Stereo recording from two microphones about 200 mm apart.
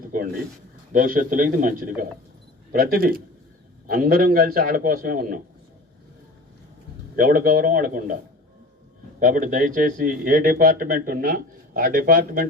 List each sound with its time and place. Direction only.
0.0 s a sound: 45° right (ahead or behind)
0.9 s a man's voice: 45° right (ahead or behind)
7.2 s speech: 45° right (ahead or behind)
9.2 s speech: 40° right (ahead or behind)